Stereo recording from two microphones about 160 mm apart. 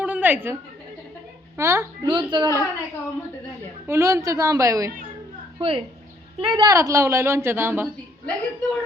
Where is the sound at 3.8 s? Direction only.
20° right (ahead or behind).